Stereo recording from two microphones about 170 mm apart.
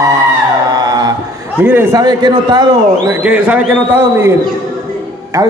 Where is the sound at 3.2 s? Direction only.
5° right (ahead or behind).